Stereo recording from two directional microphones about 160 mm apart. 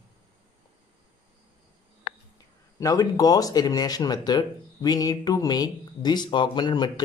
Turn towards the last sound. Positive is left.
turn(degrees=25)  # may be behind; listen again after turning